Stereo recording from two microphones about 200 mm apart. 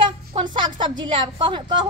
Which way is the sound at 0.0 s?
25° right (ahead or behind).